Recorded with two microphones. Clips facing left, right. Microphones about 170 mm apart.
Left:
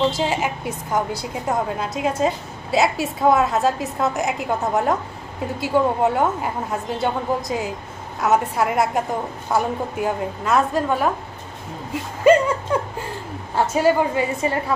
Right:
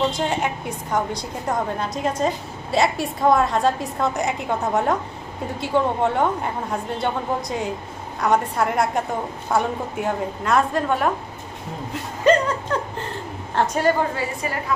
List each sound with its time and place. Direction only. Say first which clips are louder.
0.1 s a woman's voice: left 1 dB; 5° left (ahead or behind)
12.3 s a sound: left 3 dB; 10° left (ahead or behind)
13.6 s speech: left 2 dB; 10° left (ahead or behind)
14.1 s a woman's voice: left 5 dB; 25° left (ahead or behind)